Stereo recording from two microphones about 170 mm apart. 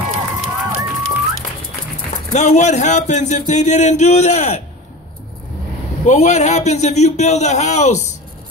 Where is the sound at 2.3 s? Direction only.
45° left (ahead or behind).